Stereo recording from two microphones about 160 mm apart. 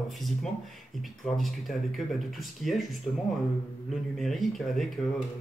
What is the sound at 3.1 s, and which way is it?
Speech, 20° left (ahead or behind).